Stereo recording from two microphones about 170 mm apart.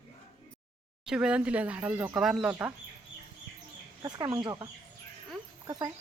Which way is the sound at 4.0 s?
25° right (ahead or behind).